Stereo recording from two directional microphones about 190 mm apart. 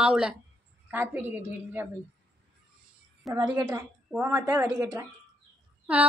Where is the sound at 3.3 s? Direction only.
20° right (ahead or behind).